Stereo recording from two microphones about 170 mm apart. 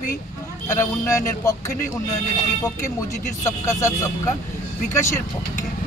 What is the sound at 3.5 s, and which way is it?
Speech, 15° left (ahead or behind).